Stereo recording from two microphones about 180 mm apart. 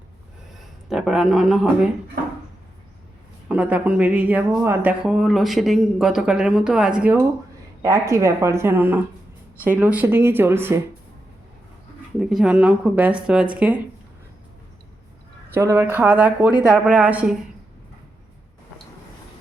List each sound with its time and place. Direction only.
0.9 s speech: centre (ahead or behind)
3.5 s speech: 10° right (ahead or behind)
12.2 s speech: 5° right (ahead or behind)
15.5 s speech: 15° right (ahead or behind)